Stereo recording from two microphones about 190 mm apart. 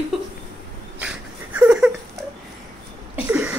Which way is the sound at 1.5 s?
5° right (ahead or behind).